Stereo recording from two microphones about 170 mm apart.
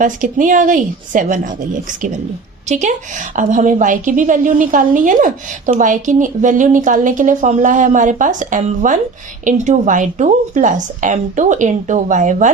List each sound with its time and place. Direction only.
0.0 s a woman's voice: 50° right (ahead or behind)